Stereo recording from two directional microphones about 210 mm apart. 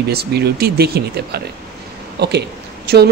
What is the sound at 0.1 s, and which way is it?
Speech, 50° right (ahead or behind).